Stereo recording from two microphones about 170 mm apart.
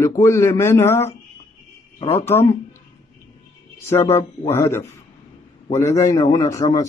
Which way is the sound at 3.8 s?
15° left (ahead or behind).